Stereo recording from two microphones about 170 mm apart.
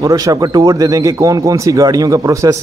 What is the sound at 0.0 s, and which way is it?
A man's voice, 20° right (ahead or behind).